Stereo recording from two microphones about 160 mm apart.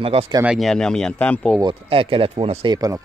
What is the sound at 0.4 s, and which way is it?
Speech, 5° right (ahead or behind).